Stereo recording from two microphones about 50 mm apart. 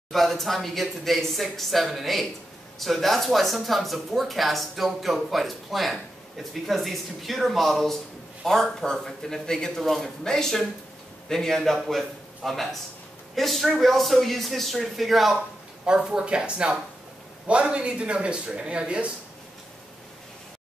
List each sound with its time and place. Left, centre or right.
0.1 s a man's voice: centre
16.0 s speech: centre